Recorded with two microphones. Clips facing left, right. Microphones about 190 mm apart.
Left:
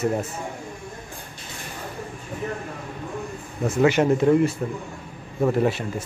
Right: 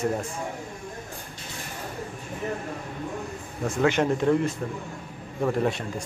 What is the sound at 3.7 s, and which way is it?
A man's voice, 10° left (ahead or behind).